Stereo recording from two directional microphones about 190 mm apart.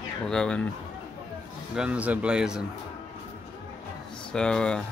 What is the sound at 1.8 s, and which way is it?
Speech, 5° right (ahead or behind).